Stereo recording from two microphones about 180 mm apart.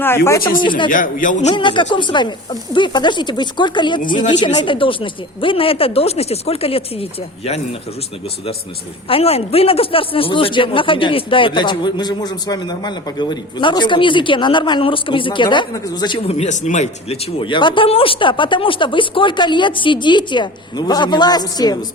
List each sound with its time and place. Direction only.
0.6 s speech: 25° left (ahead or behind)
0.9 s a man's voice: 45° left (ahead or behind)
1.5 s speech: 25° left (ahead or behind)
9.0 s speech: 35° left (ahead or behind)